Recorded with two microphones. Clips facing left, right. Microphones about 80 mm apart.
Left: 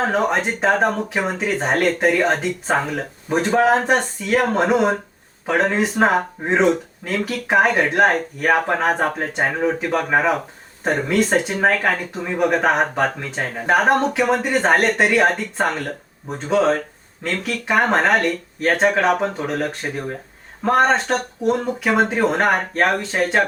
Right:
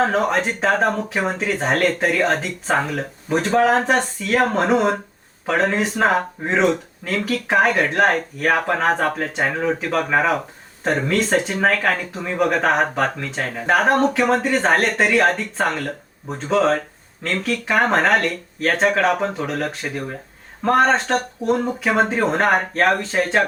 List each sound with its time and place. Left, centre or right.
0.1 s speech: centre
20.7 s speech: centre